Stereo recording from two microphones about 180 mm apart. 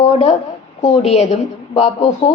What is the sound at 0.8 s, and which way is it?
A woman's voice, 35° left (ahead or behind).